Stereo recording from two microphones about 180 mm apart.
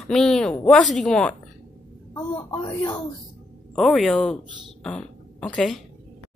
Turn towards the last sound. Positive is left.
turn(degrees=5)  # may be behind; listen again after turning